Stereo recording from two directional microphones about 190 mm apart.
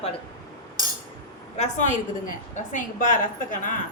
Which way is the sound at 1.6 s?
40° left (ahead or behind).